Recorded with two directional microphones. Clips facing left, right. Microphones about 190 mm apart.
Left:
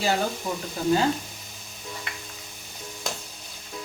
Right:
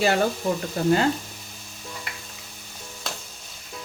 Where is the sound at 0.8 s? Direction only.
60° right (ahead or behind).